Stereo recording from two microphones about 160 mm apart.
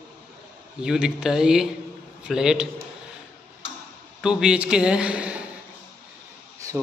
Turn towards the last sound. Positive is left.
turn(degrees=-20)  # may be behind; listen again after turning